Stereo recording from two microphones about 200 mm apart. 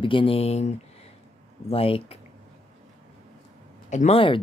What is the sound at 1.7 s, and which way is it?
Speech, 30° left (ahead or behind).